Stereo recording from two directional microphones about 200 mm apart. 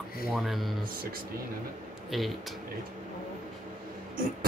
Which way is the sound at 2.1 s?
Centre (ahead or behind).